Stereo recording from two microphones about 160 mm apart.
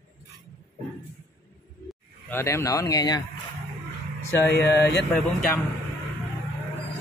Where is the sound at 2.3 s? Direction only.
15° left (ahead or behind).